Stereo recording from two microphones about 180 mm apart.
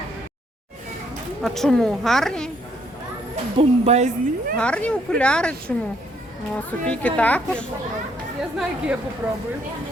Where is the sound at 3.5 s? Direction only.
40° right (ahead or behind).